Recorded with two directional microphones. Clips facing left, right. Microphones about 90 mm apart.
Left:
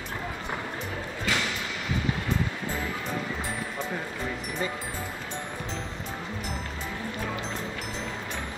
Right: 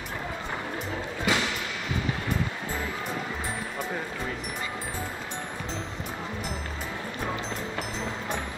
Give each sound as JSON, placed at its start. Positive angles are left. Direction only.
{"t": 1.3, "sound": "thump", "side_deg": -15}